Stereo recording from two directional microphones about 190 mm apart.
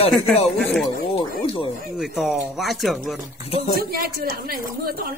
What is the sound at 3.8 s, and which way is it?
Speech, 50° right (ahead or behind).